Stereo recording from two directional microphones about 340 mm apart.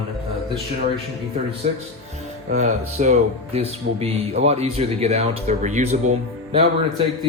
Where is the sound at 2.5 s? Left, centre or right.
Centre.